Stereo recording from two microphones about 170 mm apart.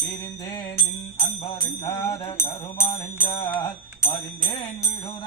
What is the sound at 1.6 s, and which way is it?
Bell, 15° left (ahead or behind).